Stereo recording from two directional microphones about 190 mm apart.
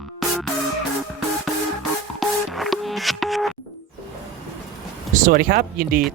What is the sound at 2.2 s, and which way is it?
Music, centre (ahead or behind).